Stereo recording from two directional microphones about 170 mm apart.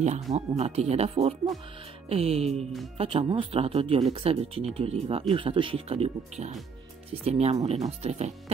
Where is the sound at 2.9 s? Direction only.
35° right (ahead or behind).